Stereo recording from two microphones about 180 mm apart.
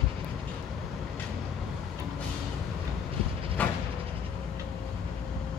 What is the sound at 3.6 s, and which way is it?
Vehicle, 5° left (ahead or behind).